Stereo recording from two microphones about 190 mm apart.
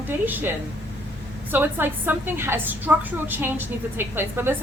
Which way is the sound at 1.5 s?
10° right (ahead or behind).